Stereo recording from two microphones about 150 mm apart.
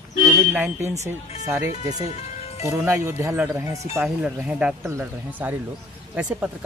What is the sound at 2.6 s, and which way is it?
Speech, 20° right (ahead or behind).